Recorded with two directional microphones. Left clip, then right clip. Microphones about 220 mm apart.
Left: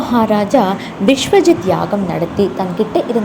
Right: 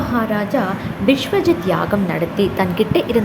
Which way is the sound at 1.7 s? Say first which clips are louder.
Left 2 dB; centre (ahead or behind).